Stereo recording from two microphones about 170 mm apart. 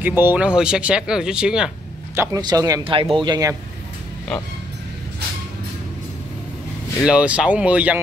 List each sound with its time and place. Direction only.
0.0 s speech: 10° right (ahead or behind)
2.1 s speech: 20° right (ahead or behind)
7.1 s speech: 5° right (ahead or behind)